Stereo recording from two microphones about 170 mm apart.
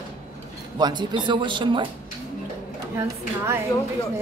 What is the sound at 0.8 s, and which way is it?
Speech, 25° right (ahead or behind).